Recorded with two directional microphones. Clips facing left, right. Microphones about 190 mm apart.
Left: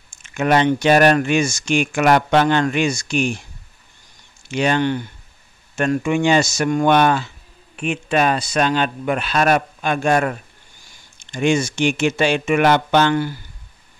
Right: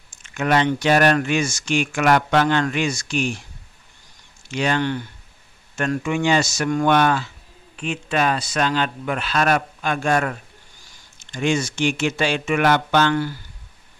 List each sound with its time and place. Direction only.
0.1 s a sound: 15° left (ahead or behind)
0.8 s speech: 20° left (ahead or behind)
4.5 s speech: 20° left (ahead or behind)